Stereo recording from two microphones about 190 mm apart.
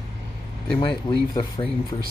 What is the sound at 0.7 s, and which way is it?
Speech, 25° left (ahead or behind).